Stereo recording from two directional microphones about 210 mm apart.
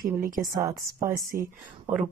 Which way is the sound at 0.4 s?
15° right (ahead or behind).